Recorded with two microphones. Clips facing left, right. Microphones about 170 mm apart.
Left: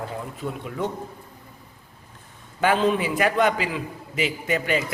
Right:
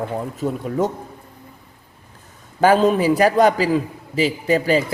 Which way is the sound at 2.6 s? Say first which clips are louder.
Right 6 dB; 40° right (ahead or behind).